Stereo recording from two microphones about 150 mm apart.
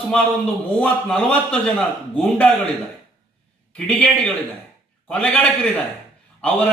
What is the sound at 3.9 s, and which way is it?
A man's voice, 5° left (ahead or behind).